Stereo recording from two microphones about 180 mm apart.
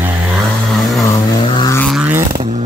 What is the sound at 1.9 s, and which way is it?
Vehicle, 10° right (ahead or behind).